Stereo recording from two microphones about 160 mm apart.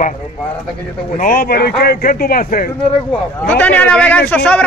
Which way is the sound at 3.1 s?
10° left (ahead or behind).